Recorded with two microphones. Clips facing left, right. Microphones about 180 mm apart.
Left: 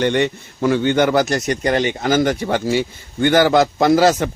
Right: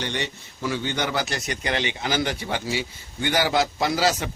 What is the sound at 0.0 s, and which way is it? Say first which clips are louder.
Speech: left 12 dB; 55° left (ahead or behind).